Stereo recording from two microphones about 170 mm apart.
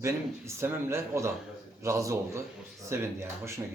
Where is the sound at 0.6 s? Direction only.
15° right (ahead or behind).